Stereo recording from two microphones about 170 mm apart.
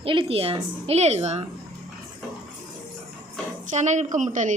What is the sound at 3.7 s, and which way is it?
Speech, 45° right (ahead or behind).